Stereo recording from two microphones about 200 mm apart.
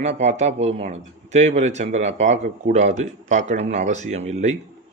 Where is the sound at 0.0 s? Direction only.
35° right (ahead or behind).